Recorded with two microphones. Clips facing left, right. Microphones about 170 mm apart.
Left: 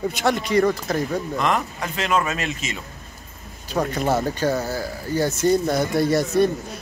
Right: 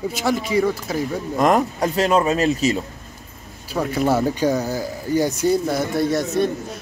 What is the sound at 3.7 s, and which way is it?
A man's voice, 5° right (ahead or behind).